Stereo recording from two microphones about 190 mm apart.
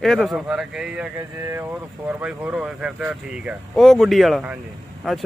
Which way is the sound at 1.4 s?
15° right (ahead or behind).